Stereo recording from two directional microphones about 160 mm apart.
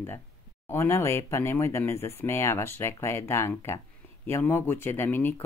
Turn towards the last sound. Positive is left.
turn(degrees=15)  # may be behind; listen again after turning